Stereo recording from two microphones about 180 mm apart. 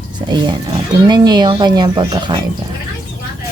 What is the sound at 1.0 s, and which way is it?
Speech, 25° right (ahead or behind).